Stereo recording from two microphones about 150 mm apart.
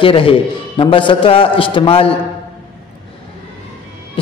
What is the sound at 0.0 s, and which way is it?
A man's voice, 35° left (ahead or behind).